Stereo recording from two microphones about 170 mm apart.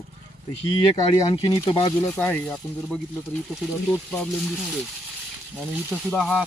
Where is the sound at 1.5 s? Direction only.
25° left (ahead or behind).